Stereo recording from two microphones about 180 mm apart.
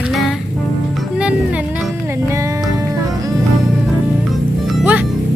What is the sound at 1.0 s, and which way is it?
Music, 5° right (ahead or behind).